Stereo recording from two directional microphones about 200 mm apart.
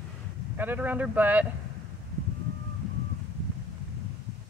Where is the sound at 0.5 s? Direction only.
10° right (ahead or behind).